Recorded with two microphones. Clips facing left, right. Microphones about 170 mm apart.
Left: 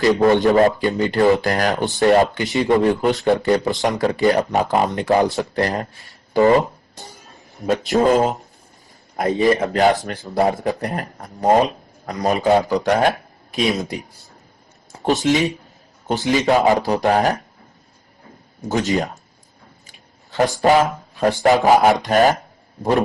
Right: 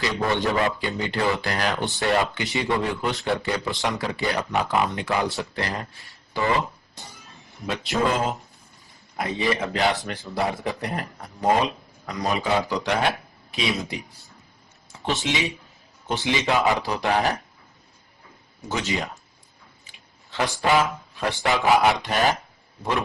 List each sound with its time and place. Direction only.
0.0 s a man's voice: 40° left (ahead or behind)
18.7 s a man's voice: 40° left (ahead or behind)